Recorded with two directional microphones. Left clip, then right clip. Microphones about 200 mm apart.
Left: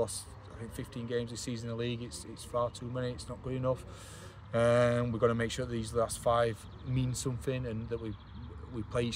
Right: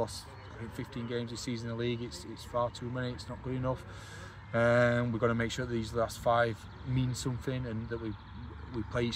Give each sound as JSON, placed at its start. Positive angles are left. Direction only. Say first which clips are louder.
{"t": 1.0, "sound": "speech", "louder": "left 2 dB", "side_deg": 25}